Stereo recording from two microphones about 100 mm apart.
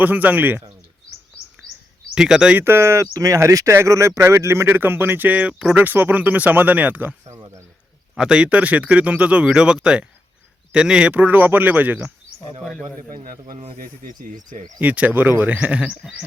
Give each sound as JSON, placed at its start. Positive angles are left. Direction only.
{"t": 0.0, "sound": "speech", "side_deg": -15}
{"t": 2.1, "sound": "speech", "side_deg": -5}
{"t": 2.6, "sound": "speech", "side_deg": -25}
{"t": 7.3, "sound": "a man's voice", "side_deg": -30}
{"t": 8.1, "sound": "speech", "side_deg": -10}
{"t": 13.4, "sound": "speech", "side_deg": -90}
{"t": 14.8, "sound": "speech", "side_deg": -15}
{"t": 15.9, "sound": "a sound", "side_deg": 0}